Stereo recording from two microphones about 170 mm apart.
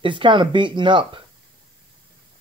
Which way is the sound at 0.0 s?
30° right (ahead or behind).